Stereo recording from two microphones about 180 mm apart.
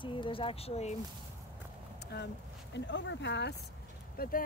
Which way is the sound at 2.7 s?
85° left.